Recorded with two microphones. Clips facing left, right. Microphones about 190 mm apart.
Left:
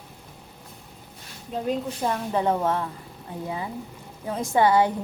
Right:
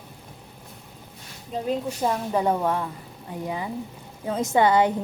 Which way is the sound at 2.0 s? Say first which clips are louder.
Right 1 dB; 15° right (ahead or behind).